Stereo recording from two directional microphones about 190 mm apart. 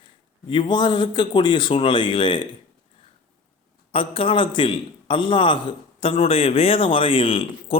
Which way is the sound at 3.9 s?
30° left (ahead or behind).